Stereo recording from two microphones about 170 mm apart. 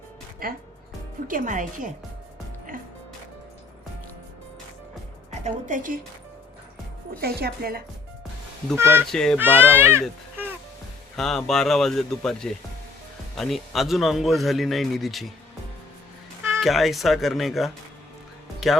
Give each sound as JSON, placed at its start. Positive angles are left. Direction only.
{"t": 0.4, "sound": "speech", "side_deg": -60}
{"t": 5.3, "sound": "a woman's voice", "side_deg": -40}
{"t": 7.2, "sound": "a woman's voice", "side_deg": -65}
{"t": 8.7, "sound": "speech", "side_deg": -15}
{"t": 9.0, "sound": "speech", "side_deg": 5}
{"t": 9.4, "sound": "speech", "side_deg": -10}
{"t": 11.2, "sound": "speech", "side_deg": 0}
{"t": 16.6, "sound": "speech", "side_deg": 0}